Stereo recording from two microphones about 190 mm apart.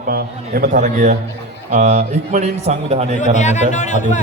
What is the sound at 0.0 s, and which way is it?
A man's voice, 55° right (ahead or behind).